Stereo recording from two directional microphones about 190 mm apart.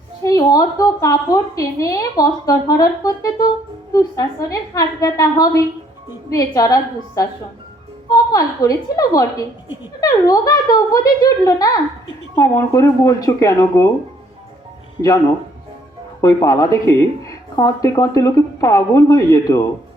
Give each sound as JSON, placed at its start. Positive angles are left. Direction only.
{"t": 0.2, "sound": "a woman's voice", "side_deg": 20}
{"t": 8.1, "sound": "a child's voice", "side_deg": 20}
{"t": 16.2, "sound": "a woman's voice", "side_deg": 20}